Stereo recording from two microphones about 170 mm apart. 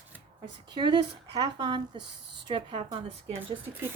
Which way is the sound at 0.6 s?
25° right (ahead or behind).